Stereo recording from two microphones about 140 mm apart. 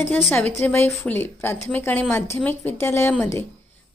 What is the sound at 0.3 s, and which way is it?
A woman's voice, 15° left (ahead or behind).